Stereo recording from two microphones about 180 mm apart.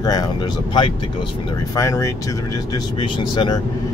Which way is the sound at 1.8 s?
15° left (ahead or behind).